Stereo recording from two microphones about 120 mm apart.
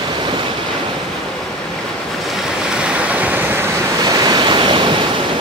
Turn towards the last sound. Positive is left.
turn(degrees=-45)  # may be behind; listen again after turning